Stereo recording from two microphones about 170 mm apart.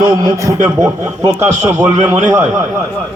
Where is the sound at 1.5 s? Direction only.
45° right (ahead or behind).